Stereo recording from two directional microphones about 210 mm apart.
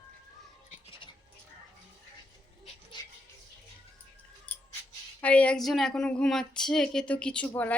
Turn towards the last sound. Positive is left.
turn(degrees=5)  # may be behind; listen again after turning